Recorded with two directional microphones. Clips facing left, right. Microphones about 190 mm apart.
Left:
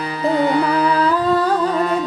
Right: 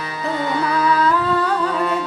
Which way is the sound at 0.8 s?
35° left (ahead or behind).